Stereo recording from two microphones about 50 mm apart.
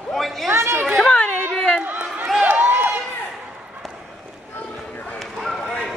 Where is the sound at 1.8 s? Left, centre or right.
Right.